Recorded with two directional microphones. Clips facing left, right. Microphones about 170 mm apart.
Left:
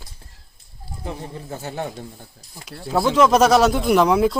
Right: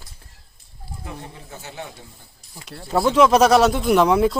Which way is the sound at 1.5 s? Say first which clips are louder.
Left 7 dB; 45° left (ahead or behind).